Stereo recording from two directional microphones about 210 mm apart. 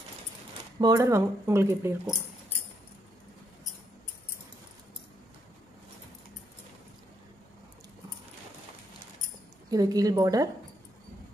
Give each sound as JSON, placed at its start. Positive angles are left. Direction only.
{"t": 0.7, "sound": "speech", "side_deg": -15}
{"t": 9.7, "sound": "speech", "side_deg": -15}